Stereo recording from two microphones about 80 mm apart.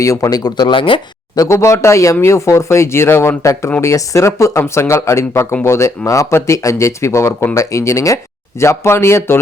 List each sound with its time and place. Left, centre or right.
0.0 s speech: left
1.4 s speech: left